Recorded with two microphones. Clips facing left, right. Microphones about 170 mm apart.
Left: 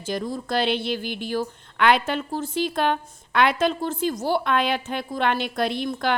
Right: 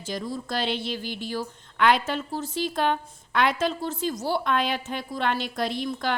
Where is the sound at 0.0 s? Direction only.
55° left (ahead or behind).